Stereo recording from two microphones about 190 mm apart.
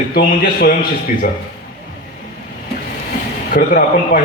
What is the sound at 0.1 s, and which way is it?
A man's voice, 45° left (ahead or behind).